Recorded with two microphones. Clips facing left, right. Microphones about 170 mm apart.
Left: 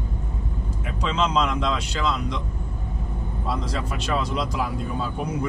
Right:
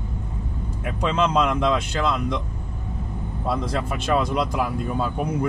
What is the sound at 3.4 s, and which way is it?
Speech, 55° right (ahead or behind).